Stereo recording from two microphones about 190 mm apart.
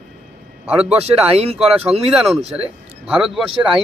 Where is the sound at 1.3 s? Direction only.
35° right (ahead or behind).